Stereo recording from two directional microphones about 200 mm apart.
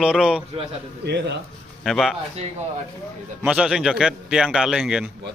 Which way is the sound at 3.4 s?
5° right (ahead or behind).